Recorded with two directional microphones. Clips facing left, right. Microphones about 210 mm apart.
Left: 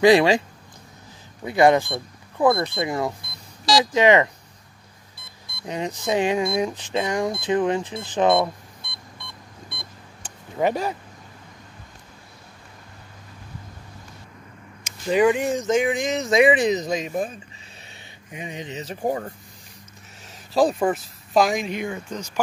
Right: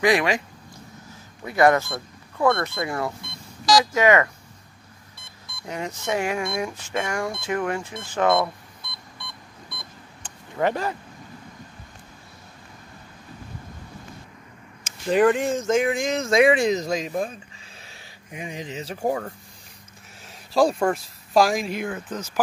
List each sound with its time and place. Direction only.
0.0 s speech: 30° left (ahead or behind)
1.4 s speech: 15° left (ahead or behind)
5.7 s speech: 15° left (ahead or behind)
10.2 s a sound: 10° left (ahead or behind)
15.0 s speech: centre (ahead or behind)
20.5 s speech: centre (ahead or behind)